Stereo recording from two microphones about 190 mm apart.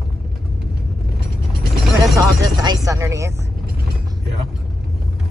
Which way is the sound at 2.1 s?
20° right (ahead or behind).